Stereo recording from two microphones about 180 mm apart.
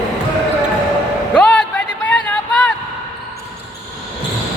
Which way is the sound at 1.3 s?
5° left (ahead or behind).